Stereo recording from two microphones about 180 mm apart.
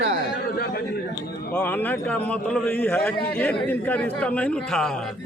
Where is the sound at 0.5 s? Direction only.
60° left (ahead or behind).